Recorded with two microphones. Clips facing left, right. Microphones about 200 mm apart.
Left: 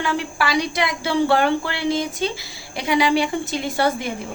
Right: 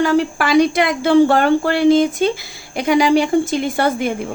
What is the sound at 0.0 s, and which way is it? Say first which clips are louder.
A woman's voice: right 8 dB; 40° right (ahead or behind).